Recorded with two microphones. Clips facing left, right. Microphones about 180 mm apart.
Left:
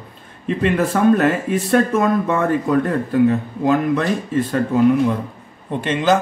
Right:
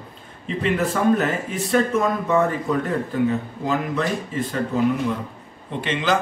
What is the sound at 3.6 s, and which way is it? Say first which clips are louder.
Speech: left 7 dB; 60° left (ahead or behind).